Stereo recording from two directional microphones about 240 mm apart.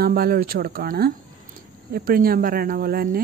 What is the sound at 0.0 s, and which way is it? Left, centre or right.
Speech, right.